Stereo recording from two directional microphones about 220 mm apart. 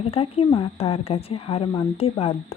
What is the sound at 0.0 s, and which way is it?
Speech, 25° left (ahead or behind).